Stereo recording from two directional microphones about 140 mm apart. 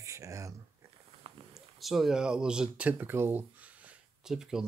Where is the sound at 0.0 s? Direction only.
20° right (ahead or behind).